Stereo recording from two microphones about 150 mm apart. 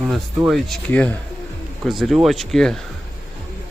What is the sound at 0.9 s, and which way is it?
Speech, 10° left (ahead or behind).